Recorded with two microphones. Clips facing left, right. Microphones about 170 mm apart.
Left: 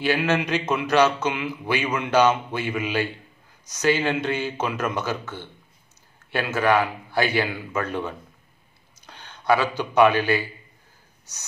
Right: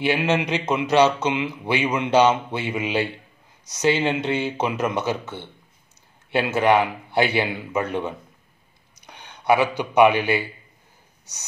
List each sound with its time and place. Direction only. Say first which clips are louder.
0.0 s speech: right 1 dB; 20° right (ahead or behind)